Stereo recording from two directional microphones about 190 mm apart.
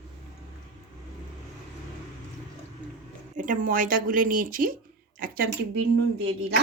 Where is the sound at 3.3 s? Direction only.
45° right (ahead or behind).